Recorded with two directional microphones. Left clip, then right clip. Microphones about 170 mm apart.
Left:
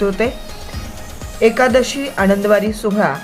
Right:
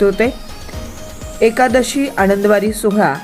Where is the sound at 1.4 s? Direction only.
20° right (ahead or behind).